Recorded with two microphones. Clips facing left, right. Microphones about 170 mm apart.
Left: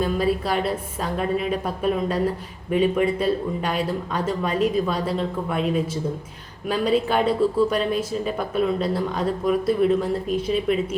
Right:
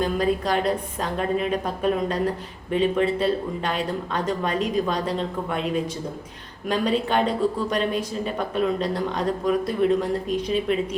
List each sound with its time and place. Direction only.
0.0 s speech: 5° left (ahead or behind)